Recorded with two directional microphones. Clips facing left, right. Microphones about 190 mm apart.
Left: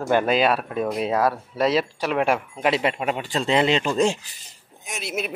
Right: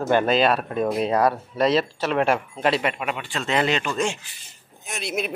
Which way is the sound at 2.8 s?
30° left (ahead or behind).